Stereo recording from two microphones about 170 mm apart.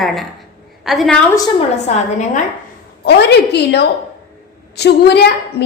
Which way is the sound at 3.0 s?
75° left (ahead or behind).